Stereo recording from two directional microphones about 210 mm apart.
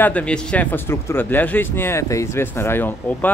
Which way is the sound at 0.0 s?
5° left (ahead or behind).